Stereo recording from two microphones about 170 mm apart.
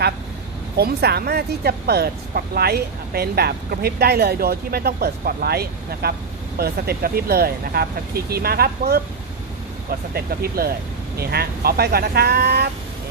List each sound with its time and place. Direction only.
0.7 s speech: 70° right (ahead or behind)